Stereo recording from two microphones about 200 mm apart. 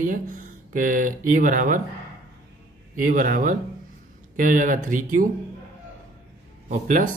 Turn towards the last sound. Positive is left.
turn(degrees=-40)  # may be behind; listen again after turning